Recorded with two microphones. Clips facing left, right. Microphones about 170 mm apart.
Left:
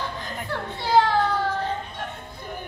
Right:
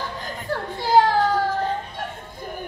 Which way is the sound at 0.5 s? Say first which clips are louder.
Right 3 dB; 40° right (ahead or behind).